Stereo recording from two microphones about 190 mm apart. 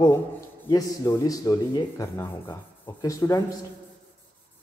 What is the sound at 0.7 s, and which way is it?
Speech, 20° left (ahead or behind).